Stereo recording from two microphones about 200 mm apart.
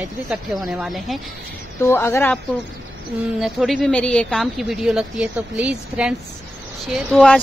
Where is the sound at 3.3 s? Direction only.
Centre (ahead or behind).